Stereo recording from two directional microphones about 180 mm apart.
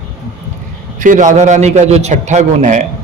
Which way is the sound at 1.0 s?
45° right (ahead or behind).